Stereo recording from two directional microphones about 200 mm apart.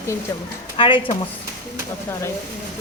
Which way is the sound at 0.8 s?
25° left (ahead or behind).